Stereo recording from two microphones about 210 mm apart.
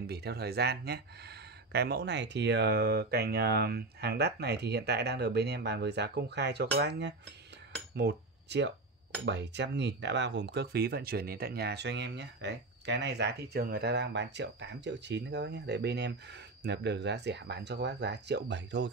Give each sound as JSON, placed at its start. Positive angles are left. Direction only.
{"t": 0.0, "sound": "speech", "side_deg": -50}